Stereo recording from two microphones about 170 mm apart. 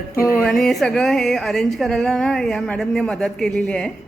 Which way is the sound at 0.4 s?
Centre (ahead or behind).